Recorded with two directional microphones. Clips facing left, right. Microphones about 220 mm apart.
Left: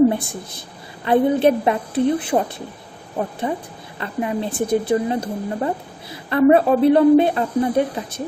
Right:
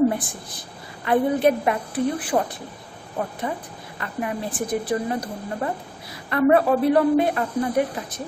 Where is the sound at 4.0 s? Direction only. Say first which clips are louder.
Left 5 dB; 25° left (ahead or behind).